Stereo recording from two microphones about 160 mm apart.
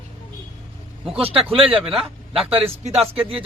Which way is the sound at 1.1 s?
35° right (ahead or behind).